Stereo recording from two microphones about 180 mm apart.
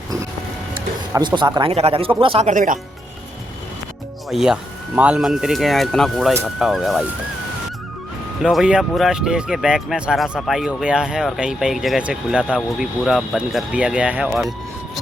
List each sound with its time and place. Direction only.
1.1 s speech: 25° right (ahead or behind)
2.5 s speech: 45° right (ahead or behind)
4.3 s speech: 5° right (ahead or behind)
8.4 s speech: 5° right (ahead or behind)